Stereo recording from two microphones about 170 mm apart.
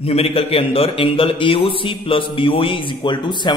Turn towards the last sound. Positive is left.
turn(degrees=25)  # may be behind; listen again after turning